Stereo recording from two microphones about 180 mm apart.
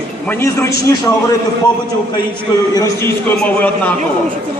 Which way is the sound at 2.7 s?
15° left (ahead or behind).